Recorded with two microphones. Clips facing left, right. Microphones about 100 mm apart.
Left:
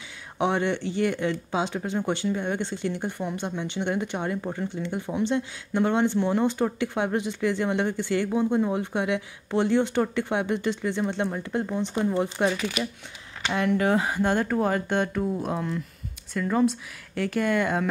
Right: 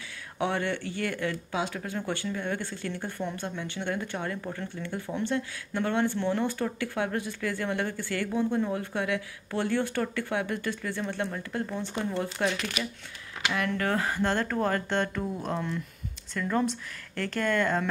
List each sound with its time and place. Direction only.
0.4 s speech: 20° left (ahead or behind)
12.4 s speech: 5° left (ahead or behind)
13.7 s speech: 15° left (ahead or behind)